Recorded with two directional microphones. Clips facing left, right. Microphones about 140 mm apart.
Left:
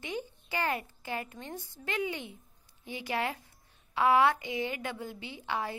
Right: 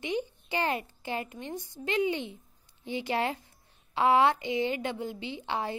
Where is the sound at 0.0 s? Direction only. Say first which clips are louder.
Right 6 dB; 20° right (ahead or behind).